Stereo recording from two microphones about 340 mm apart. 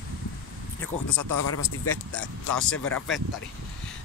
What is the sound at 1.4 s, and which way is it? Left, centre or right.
Speech, left.